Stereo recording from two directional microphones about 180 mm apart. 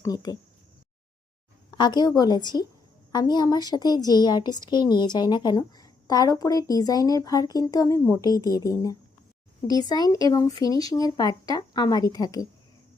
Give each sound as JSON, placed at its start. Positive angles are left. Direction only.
{"t": 0.0, "sound": "a woman's voice", "side_deg": 20}
{"t": 1.7, "sound": "a woman's voice", "side_deg": 25}